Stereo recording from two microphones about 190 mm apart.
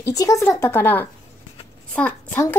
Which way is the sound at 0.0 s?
15° left (ahead or behind).